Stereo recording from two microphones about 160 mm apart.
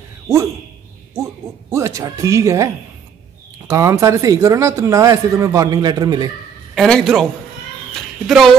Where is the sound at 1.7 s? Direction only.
20° right (ahead or behind).